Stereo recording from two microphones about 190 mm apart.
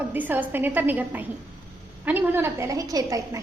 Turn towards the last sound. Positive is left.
turn(degrees=-15)  # may be behind; listen again after turning